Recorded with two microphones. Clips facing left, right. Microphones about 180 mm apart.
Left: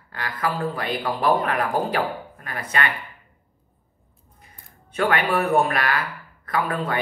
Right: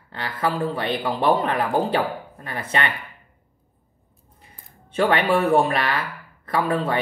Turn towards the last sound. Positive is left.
turn(degrees=-25)  # may be behind; listen again after turning